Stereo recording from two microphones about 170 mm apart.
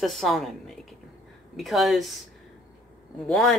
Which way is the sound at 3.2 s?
5° left (ahead or behind).